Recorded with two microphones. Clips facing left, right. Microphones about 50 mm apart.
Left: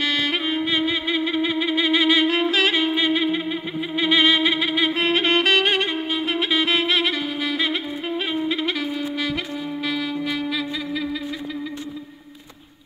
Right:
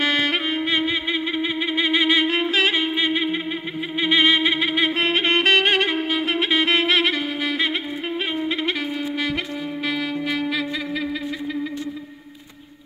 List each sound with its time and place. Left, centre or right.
0.0 s music: centre
0.5 s music: right
0.8 s humming: right
4.0 s music: right
5.8 s music: right
9.8 s music: right